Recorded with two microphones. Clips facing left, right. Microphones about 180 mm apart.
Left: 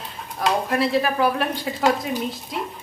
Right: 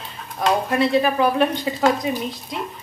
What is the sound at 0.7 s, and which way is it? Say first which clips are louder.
A man's voice: right 3 dB; centre (ahead or behind).